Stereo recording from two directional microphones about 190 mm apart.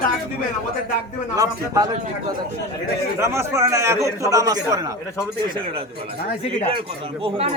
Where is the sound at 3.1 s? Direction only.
15° right (ahead or behind).